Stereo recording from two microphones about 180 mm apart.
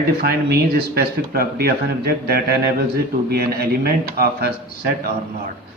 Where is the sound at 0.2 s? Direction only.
60° right (ahead or behind).